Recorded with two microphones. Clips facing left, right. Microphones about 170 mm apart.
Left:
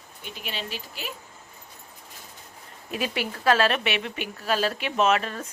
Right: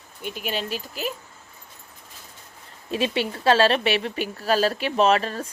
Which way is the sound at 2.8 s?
25° right (ahead or behind).